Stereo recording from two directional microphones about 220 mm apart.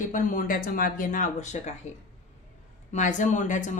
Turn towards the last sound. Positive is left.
turn(degrees=35)  # may be behind; listen again after turning